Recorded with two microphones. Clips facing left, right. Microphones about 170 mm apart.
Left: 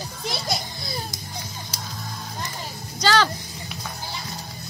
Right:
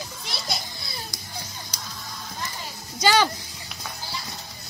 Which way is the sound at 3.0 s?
10° right (ahead or behind).